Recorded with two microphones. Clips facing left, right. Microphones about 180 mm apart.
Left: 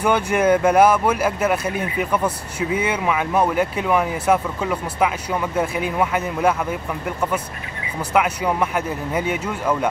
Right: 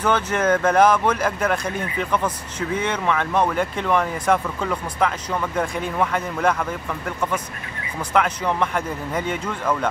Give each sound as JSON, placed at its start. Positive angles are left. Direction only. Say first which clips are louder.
{"t": 0.0, "sound": "speech", "louder": "left 3 dB", "side_deg": 10}